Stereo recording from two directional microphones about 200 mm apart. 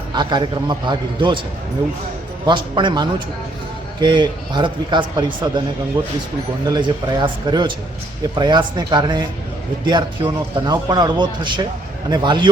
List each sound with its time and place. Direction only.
0.1 s speech: 20° right (ahead or behind)
2.5 s speech: 25° right (ahead or behind)
6.7 s speech: 20° right (ahead or behind)